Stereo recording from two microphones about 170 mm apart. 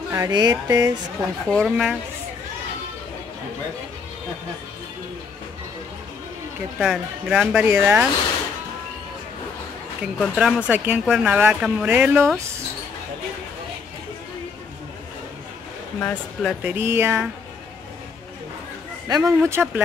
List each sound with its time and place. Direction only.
0.1 s speech: 20° right (ahead or behind)
1.5 s speech: centre (ahead or behind)
6.8 s speech: 5° right (ahead or behind)
10.1 s speech: centre (ahead or behind)
16.0 s speech: 10° left (ahead or behind)
16.6 s speech: 15° right (ahead or behind)
19.0 s speech: 20° right (ahead or behind)